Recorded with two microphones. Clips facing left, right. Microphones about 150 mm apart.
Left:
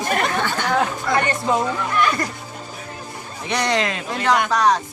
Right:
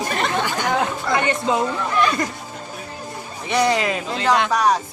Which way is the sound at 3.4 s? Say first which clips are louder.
Right 2 dB; 5° right (ahead or behind).